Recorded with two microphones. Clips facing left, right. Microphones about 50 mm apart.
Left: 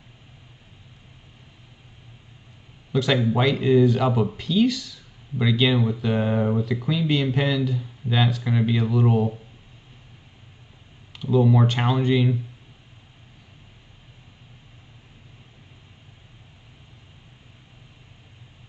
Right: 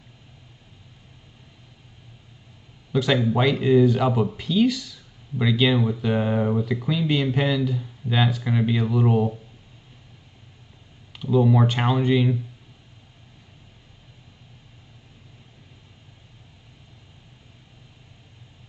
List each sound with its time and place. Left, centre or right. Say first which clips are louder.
2.9 s speech: even; centre
11.1 s speech: even; centre